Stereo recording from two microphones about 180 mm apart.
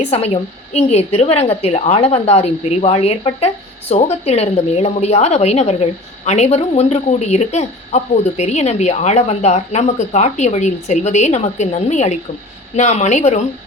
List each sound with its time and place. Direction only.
0.0 s a woman's voice: 35° left (ahead or behind)